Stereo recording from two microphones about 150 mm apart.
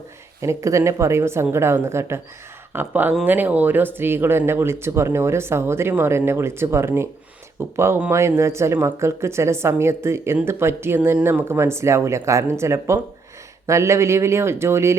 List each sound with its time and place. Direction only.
0.4 s speech: 20° right (ahead or behind)